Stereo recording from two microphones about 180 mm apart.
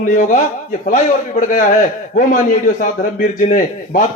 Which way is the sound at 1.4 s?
45° left (ahead or behind).